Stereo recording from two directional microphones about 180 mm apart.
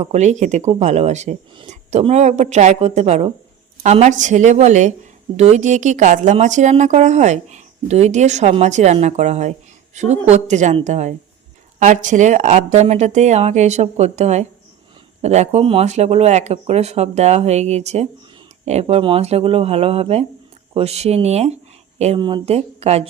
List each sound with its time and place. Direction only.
0.0 s a woman's voice: 40° right (ahead or behind)